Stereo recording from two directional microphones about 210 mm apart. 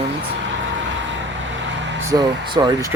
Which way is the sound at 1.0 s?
60° right (ahead or behind).